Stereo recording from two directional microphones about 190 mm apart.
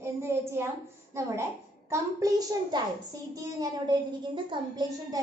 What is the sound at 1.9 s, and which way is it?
A child's voice, 20° right (ahead or behind).